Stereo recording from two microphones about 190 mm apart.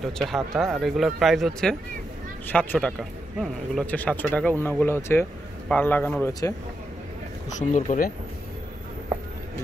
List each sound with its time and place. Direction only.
0.0 s speech: centre (ahead or behind)
7.5 s speech: 40° left (ahead or behind)